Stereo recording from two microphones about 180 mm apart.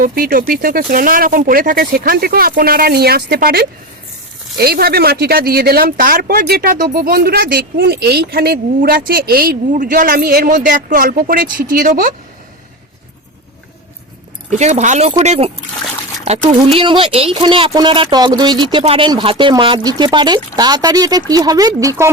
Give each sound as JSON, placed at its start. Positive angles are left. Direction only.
{"t": 0.0, "sound": "speech", "side_deg": -50}
{"t": 14.5, "sound": "speech", "side_deg": -40}